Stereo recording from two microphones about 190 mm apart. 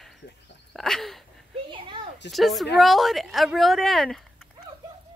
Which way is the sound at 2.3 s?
Centre (ahead or behind).